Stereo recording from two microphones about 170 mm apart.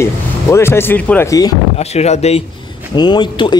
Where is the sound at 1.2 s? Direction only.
20° left (ahead or behind).